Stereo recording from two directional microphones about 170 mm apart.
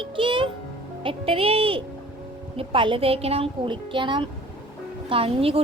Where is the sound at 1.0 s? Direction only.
35° right (ahead or behind).